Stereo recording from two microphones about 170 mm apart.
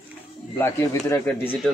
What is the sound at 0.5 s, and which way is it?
Speech, 15° left (ahead or behind).